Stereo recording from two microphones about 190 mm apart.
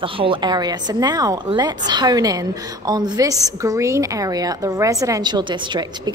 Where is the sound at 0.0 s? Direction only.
25° right (ahead or behind).